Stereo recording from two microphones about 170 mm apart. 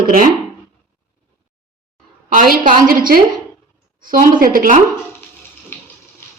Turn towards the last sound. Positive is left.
turn(degrees=-55)  # may be behind; listen again after turning